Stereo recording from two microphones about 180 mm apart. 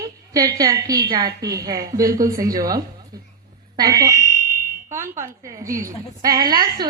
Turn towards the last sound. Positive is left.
turn(degrees=-25)  # may be behind; listen again after turning